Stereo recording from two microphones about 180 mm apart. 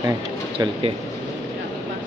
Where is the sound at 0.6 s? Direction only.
30° right (ahead or behind).